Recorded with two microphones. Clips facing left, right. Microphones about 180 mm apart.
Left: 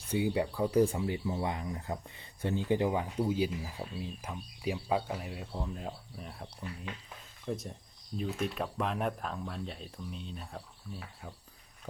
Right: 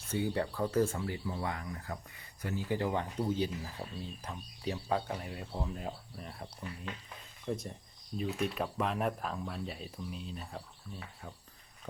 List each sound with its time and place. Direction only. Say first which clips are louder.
0.1 s speech: left 3 dB; 10° left (ahead or behind)
2.9 s speech: left 2 dB; 10° left (ahead or behind)